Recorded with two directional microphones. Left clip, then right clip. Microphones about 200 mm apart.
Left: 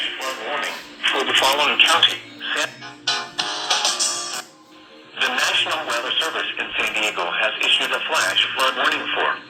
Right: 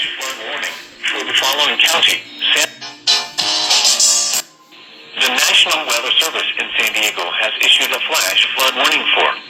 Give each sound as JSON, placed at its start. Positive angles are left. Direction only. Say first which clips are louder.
{"t": 1.0, "sound": "radio", "louder": "right 1 dB", "side_deg": 10}
{"t": 1.7, "sound": "music", "louder": "right 3 dB", "side_deg": -25}
{"t": 5.1, "sound": "speech", "louder": "right 7 dB", "side_deg": -25}